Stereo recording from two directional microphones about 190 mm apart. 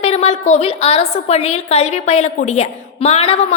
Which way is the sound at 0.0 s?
35° left (ahead or behind).